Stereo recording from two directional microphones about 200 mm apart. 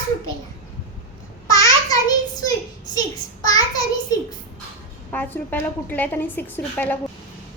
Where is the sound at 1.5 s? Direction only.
20° left (ahead or behind).